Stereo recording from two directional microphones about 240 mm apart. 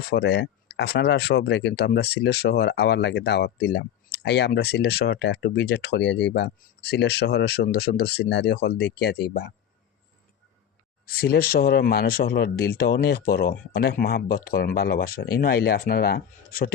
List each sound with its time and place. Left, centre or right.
0.1 s speech: left
11.0 s speech: left